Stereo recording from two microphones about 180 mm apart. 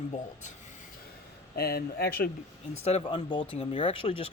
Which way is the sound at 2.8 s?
35° left (ahead or behind).